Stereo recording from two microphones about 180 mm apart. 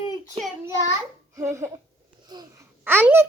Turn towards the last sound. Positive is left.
turn(degrees=-10)  # may be behind; listen again after turning